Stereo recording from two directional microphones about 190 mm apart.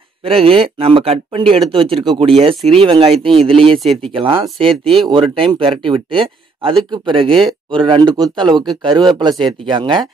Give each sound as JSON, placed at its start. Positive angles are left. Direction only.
{"t": 0.2, "sound": "speech", "side_deg": -30}
{"t": 3.8, "sound": "speech", "side_deg": 0}
{"t": 4.1, "sound": "speech", "side_deg": -25}